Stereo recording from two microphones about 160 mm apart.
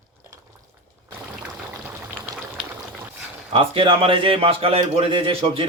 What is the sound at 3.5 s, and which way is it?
A man's voice, 35° right (ahead or behind).